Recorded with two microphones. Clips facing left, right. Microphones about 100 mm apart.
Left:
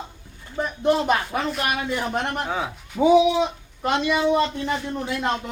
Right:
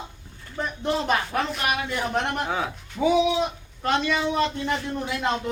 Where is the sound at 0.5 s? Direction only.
10° left (ahead or behind).